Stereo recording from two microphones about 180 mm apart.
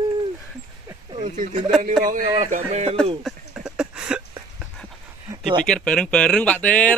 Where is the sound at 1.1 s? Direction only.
45° right (ahead or behind).